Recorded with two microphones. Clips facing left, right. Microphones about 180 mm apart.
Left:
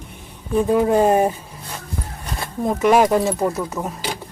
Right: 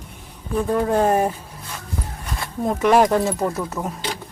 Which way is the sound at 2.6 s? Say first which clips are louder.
Left 1 dB; 5° left (ahead or behind).